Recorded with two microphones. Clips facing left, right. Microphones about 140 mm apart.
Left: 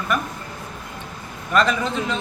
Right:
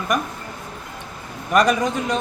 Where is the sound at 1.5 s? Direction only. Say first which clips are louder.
Right 2 dB; 15° right (ahead or behind).